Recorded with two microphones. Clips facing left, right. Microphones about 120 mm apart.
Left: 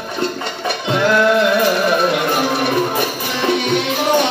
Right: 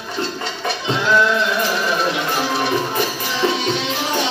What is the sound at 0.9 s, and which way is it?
Music, 55° left (ahead or behind).